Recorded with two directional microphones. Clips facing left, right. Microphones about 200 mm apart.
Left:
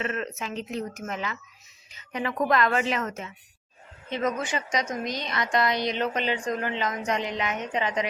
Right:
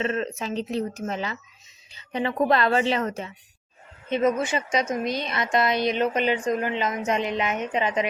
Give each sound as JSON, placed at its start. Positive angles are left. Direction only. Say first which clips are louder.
{"t": 0.0, "sound": "a woman's voice", "louder": "right 4 dB", "side_deg": -30}
{"t": 5.7, "sound": "speech", "louder": "right 4 dB", "side_deg": 20}
{"t": 6.0, "sound": "a woman's voice", "louder": "right 4 dB", "side_deg": -15}